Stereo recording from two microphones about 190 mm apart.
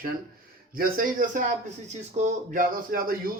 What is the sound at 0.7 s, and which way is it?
Speech, 50° right (ahead or behind).